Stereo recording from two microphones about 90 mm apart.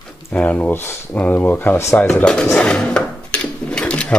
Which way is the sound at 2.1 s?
10° left (ahead or behind).